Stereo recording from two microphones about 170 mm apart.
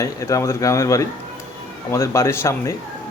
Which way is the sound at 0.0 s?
20° left (ahead or behind).